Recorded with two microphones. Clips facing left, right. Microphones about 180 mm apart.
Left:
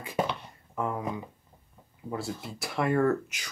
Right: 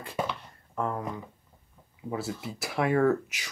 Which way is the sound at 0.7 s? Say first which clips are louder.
Even; 5° left (ahead or behind).